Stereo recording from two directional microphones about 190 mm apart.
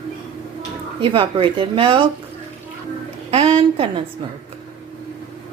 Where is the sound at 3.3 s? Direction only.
30° right (ahead or behind).